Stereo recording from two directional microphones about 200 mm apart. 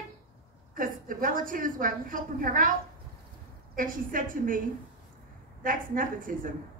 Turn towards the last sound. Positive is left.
turn(degrees=-45)  # may be behind; listen again after turning